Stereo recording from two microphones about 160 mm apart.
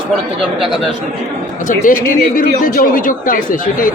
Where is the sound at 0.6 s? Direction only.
Centre (ahead or behind).